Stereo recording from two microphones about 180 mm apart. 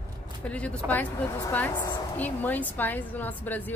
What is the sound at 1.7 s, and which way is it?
Speech, 25° left (ahead or behind).